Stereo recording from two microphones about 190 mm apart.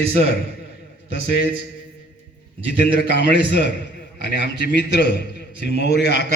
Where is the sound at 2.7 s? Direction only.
65° left (ahead or behind).